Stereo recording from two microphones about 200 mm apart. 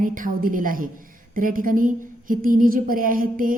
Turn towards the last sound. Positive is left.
turn(degrees=-45)  # may be behind; listen again after turning